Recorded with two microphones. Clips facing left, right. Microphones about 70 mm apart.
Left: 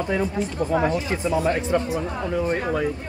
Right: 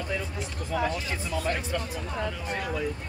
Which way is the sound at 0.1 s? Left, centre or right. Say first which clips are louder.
Left 9 dB; left.